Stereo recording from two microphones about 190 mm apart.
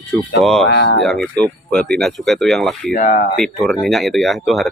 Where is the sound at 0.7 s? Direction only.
60° left (ahead or behind).